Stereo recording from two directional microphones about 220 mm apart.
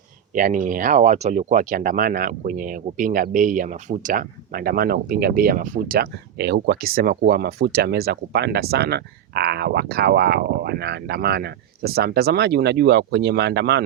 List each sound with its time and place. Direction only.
0.3 s speech: 35° right (ahead or behind)